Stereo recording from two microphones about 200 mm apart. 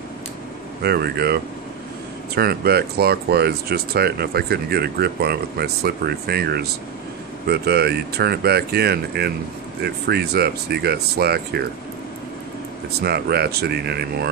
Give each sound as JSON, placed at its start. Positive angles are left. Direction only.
{"t": 0.8, "sound": "speech", "side_deg": -55}
{"t": 13.0, "sound": "speech", "side_deg": -55}